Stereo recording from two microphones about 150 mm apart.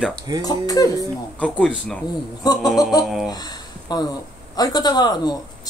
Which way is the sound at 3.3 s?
25° left (ahead or behind).